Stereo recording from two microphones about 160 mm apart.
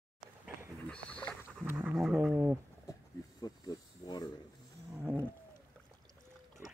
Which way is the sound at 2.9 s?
25° left (ahead or behind).